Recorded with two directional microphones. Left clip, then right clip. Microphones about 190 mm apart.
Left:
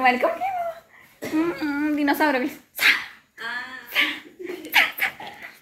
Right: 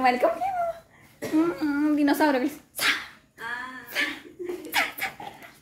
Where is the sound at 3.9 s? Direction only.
20° right (ahead or behind).